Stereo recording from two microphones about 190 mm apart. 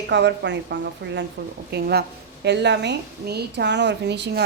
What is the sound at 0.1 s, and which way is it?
A woman's voice, 65° right (ahead or behind).